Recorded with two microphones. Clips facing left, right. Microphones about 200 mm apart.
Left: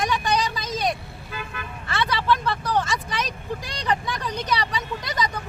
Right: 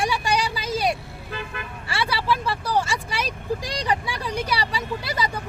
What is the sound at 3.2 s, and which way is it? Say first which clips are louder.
Speech: right 4 dB; 35° right (ahead or behind).